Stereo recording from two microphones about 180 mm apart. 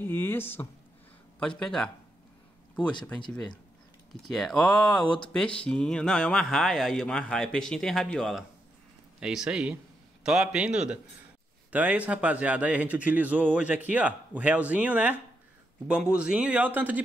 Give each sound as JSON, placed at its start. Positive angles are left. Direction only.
{"t": 0.0, "sound": "speech", "side_deg": 10}
{"t": 4.1, "sound": "speech", "side_deg": 0}